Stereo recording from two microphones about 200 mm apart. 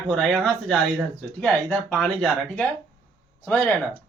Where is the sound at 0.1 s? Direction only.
Centre (ahead or behind).